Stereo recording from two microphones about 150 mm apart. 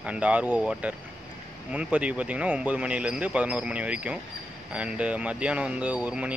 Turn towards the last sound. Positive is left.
turn(degrees=-10)  # may be behind; listen again after turning